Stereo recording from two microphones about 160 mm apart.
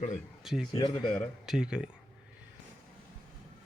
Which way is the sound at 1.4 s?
5° right (ahead or behind).